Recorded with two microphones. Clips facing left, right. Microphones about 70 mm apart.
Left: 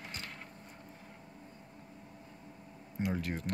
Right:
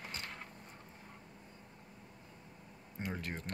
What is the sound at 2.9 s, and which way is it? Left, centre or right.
Speech, centre.